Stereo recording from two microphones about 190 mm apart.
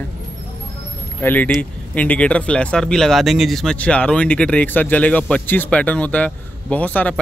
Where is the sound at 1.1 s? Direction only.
10° left (ahead or behind).